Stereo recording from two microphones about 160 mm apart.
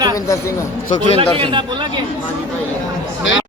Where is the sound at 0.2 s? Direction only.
20° left (ahead or behind).